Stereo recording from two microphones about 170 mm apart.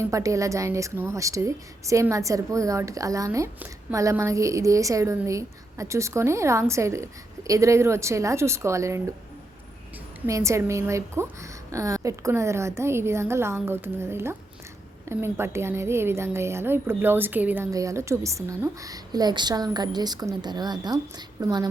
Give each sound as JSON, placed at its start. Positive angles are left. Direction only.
{"t": 0.0, "sound": "a woman's voice", "side_deg": -20}
{"t": 10.2, "sound": "a woman's voice", "side_deg": -15}